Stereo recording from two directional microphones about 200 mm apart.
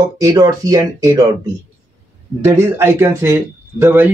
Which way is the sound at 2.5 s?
15° right (ahead or behind).